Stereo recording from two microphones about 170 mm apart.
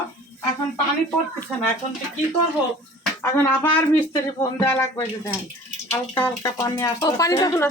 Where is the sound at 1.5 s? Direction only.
5° right (ahead or behind).